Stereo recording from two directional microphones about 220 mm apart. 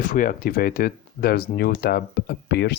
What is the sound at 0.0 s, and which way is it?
Speech, 35° left (ahead or behind).